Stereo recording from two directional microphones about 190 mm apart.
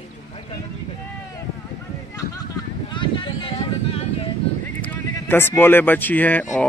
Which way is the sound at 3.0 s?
25° left (ahead or behind).